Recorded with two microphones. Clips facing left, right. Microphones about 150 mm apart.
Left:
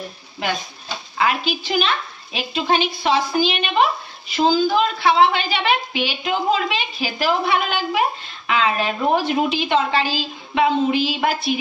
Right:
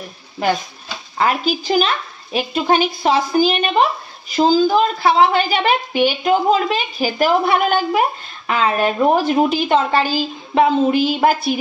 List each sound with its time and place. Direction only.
1.1 s a woman's voice: 40° right (ahead or behind)